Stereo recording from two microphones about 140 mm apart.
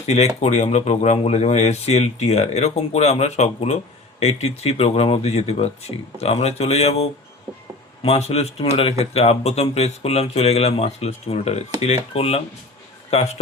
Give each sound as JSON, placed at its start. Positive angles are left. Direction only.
{"t": 0.3, "sound": "a man's voice", "side_deg": 55}